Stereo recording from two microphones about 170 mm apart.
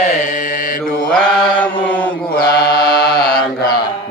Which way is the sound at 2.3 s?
60° left (ahead or behind).